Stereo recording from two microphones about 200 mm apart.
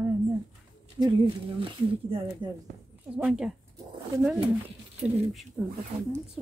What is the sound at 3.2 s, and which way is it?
Speech, 5° right (ahead or behind).